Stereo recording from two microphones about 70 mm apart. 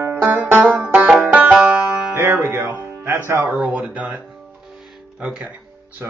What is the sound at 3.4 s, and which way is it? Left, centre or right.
Speech, right.